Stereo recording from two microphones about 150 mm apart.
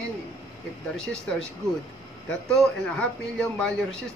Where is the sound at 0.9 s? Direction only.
5° left (ahead or behind).